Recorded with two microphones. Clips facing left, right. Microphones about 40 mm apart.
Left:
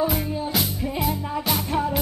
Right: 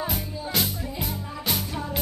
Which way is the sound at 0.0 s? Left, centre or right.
Centre.